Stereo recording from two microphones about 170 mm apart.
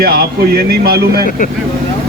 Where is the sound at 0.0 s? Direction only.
65° right (ahead or behind).